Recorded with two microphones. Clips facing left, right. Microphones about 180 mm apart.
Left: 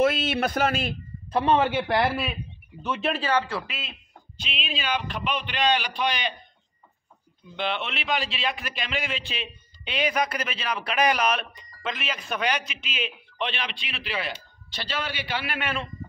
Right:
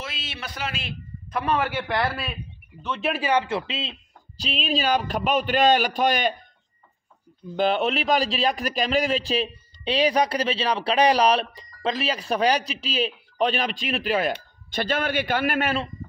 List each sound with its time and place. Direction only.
0.0 s a man's voice: 55° left (ahead or behind)
1.3 s a man's voice: 25° left (ahead or behind)
3.0 s speech: 10° right (ahead or behind); by 3.9 s 25° right (ahead or behind)
4.4 s a man's voice: 40° right (ahead or behind)
7.4 s a man's voice: 40° right (ahead or behind)